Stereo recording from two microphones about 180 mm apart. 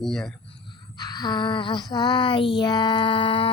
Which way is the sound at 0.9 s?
20° left (ahead or behind).